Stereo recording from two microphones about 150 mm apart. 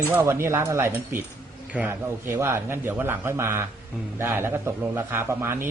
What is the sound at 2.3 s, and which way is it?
A man's voice, 15° right (ahead or behind).